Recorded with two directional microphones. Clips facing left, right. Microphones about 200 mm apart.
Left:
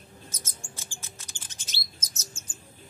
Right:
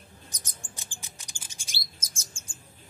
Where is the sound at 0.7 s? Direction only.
15° right (ahead or behind).